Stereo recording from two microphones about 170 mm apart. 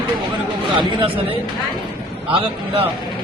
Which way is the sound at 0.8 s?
30° right (ahead or behind).